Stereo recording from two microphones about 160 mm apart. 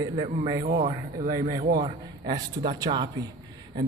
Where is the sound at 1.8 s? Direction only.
25° right (ahead or behind).